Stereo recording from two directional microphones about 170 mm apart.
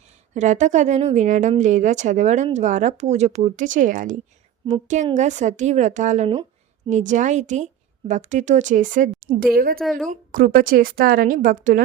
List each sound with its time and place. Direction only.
0.0 s a woman's voice: 45° right (ahead or behind); by 9.8 s 60° right (ahead or behind)
9.8 s a woman's voice: centre (ahead or behind)
10.1 s a woman's voice: 55° right (ahead or behind)